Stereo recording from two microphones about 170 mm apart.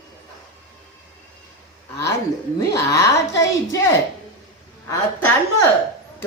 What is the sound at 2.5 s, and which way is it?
Speech, 20° left (ahead or behind).